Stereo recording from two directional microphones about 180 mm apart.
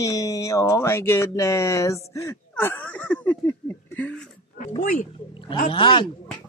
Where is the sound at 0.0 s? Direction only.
15° left (ahead or behind).